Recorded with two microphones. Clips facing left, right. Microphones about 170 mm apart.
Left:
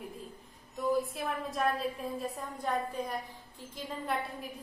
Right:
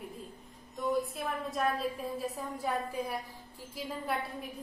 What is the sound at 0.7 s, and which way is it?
A woman's voice, centre (ahead or behind).